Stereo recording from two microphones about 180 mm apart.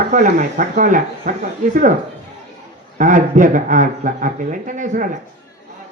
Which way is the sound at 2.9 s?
45° right (ahead or behind).